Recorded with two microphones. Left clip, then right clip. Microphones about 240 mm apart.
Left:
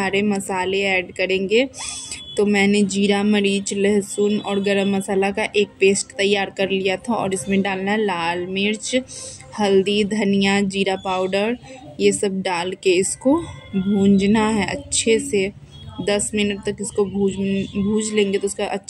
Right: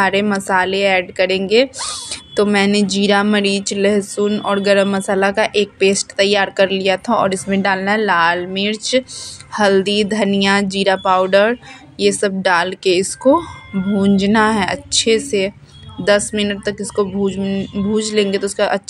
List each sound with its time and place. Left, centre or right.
0.0 s a woman's voice: centre
17.4 s speech: right
17.9 s a woman's voice: centre